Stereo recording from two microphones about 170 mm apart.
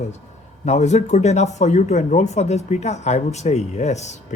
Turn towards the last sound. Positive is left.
turn(degrees=40)  # may be behind; listen again after turning